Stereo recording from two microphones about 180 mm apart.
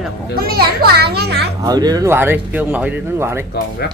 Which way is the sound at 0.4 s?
60° right (ahead or behind).